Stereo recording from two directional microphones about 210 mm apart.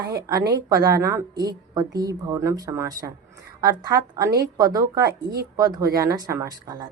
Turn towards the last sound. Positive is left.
turn(degrees=-20)  # may be behind; listen again after turning